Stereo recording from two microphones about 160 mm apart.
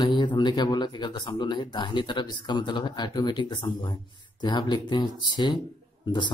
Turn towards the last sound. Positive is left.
turn(degrees=30)  # may be behind; listen again after turning